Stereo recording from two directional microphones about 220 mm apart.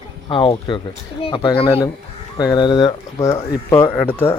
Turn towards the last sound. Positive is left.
turn(degrees=10)  # may be behind; listen again after turning